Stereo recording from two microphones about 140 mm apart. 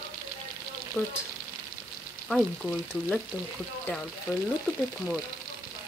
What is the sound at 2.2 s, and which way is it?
Frying, centre (ahead or behind).